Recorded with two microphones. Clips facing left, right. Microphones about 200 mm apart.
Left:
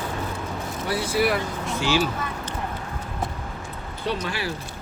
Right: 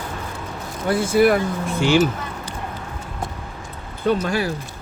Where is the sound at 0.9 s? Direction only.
50° right (ahead or behind).